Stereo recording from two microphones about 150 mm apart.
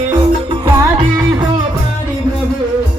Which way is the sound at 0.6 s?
20° right (ahead or behind).